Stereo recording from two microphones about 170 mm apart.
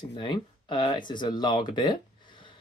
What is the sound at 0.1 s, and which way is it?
Speech, 25° left (ahead or behind).